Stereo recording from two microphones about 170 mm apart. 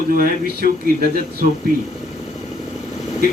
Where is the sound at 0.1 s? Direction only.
55° right (ahead or behind).